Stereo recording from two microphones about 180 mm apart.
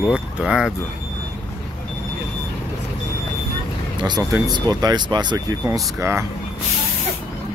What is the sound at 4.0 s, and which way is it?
Speech, 20° right (ahead or behind).